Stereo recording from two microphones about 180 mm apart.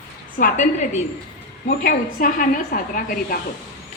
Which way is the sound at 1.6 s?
50° left (ahead or behind).